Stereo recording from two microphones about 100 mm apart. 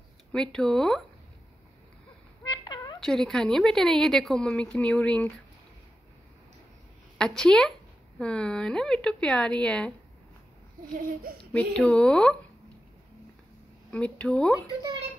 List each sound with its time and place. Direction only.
0.3 s a woman's voice: 5° left (ahead or behind)
2.4 s a sound: 45° left (ahead or behind)
3.0 s a woman's voice: 5° left (ahead or behind)
7.2 s a woman's voice: 5° left (ahead or behind)
11.5 s a woman's voice: 10° left (ahead or behind)
13.8 s a woman's voice: 10° left (ahead or behind)